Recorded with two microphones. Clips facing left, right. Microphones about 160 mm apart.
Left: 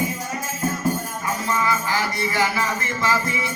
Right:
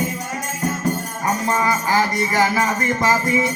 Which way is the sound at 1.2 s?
45° right (ahead or behind).